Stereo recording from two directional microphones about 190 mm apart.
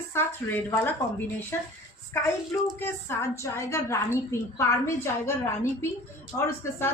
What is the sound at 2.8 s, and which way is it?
A woman's voice, 15° left (ahead or behind).